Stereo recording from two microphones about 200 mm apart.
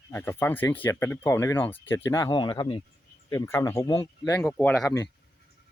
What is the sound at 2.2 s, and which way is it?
Speech, 25° left (ahead or behind).